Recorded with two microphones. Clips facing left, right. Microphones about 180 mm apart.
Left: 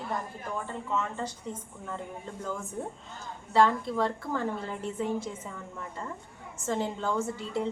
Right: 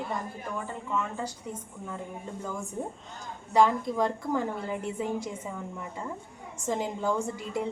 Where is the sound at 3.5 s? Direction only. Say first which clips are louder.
Right 1 dB; 15° right (ahead or behind).